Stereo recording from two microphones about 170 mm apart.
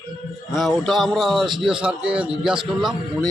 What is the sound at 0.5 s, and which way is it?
A man's voice, centre (ahead or behind).